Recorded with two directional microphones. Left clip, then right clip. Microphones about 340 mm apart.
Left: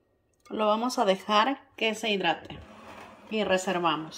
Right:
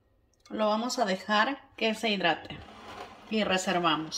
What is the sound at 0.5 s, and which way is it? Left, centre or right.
Speech, centre.